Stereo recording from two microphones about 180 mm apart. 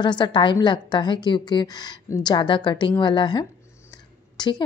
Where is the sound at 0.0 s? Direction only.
25° left (ahead or behind).